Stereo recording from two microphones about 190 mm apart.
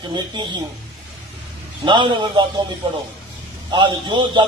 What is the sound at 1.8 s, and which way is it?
A man's voice, 25° right (ahead or behind).